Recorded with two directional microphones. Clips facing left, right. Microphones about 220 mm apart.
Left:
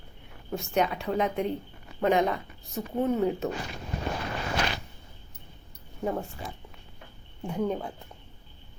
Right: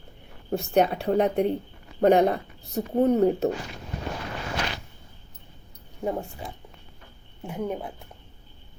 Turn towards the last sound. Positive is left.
turn(degrees=-5)  # may be behind; listen again after turning